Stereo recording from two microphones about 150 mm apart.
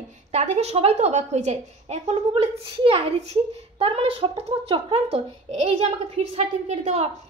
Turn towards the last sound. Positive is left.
turn(degrees=-45)  # may be behind; listen again after turning